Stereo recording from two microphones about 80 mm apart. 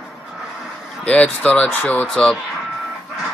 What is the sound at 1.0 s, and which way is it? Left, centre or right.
Speech, centre.